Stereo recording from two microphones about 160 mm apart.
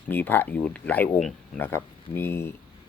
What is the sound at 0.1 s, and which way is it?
Speech, 10° left (ahead or behind).